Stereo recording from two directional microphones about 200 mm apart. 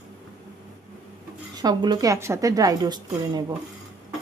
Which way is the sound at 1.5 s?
20° right (ahead or behind).